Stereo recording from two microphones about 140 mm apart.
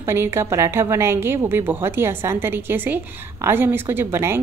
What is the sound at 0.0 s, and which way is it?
A woman's voice, 15° right (ahead or behind).